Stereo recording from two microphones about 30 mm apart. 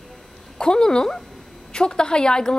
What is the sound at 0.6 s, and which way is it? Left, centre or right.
A woman's voice, left.